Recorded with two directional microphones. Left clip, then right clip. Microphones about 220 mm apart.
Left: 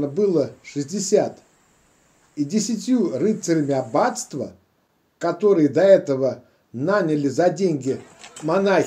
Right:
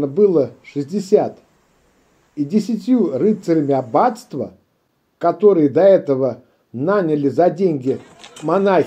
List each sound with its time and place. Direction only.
0.0 s a man's voice: 20° right (ahead or behind)
2.3 s a man's voice: 20° right (ahead or behind)